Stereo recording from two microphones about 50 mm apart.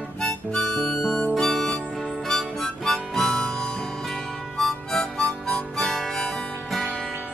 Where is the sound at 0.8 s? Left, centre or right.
Centre.